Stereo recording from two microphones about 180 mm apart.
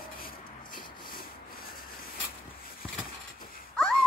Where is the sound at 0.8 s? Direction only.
50° left (ahead or behind).